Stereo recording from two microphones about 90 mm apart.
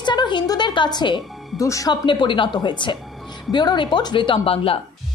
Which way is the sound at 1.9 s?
65° left (ahead or behind).